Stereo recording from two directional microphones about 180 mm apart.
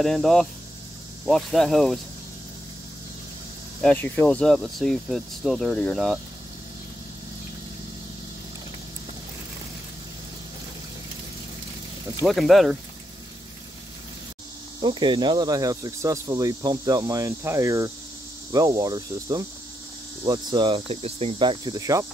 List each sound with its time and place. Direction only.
0.0 s speech: centre (ahead or behind)
3.8 s speech: 10° left (ahead or behind)
12.3 s speech: centre (ahead or behind)
14.8 s speech: 25° right (ahead or behind)